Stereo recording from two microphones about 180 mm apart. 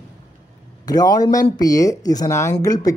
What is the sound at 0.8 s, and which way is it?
Speech, 20° left (ahead or behind).